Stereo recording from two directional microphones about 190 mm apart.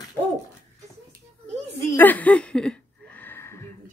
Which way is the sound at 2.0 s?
10° left (ahead or behind).